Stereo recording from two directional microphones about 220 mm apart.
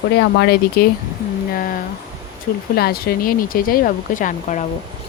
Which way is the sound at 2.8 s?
45° left (ahead or behind).